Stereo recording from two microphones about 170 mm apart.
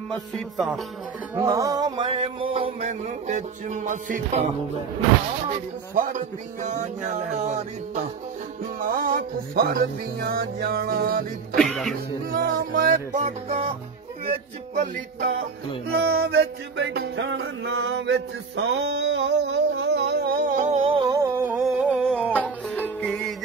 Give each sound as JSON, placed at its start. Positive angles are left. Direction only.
{"t": 1.3, "sound": "mantra", "side_deg": -20}
{"t": 5.9, "sound": "speech", "side_deg": -45}
{"t": 8.7, "sound": "music", "side_deg": -55}
{"t": 11.5, "sound": "music", "side_deg": 0}
{"t": 12.3, "sound": "music", "side_deg": -55}
{"t": 15.1, "sound": "music", "side_deg": -65}
{"t": 18.6, "sound": "a sound", "side_deg": -90}
{"t": 20.6, "sound": "a sound", "side_deg": -35}
{"t": 21.3, "sound": "humming", "side_deg": -15}
{"t": 21.6, "sound": "a sound", "side_deg": 0}
{"t": 22.8, "sound": "music", "side_deg": 5}